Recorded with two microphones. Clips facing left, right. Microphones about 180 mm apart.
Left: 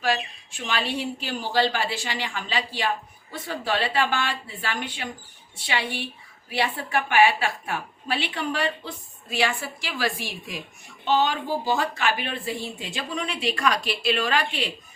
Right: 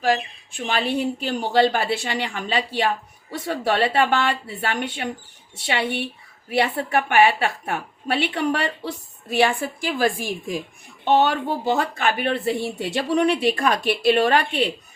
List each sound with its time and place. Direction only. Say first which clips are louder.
0.5 s speech: right 5 dB; 55° right (ahead or behind)
8.4 s speech: right 4 dB; 70° right (ahead or behind)
9.6 s a woman's voice: right 7 dB; 50° right (ahead or behind)
11.0 s speech: right 4 dB; 60° right (ahead or behind)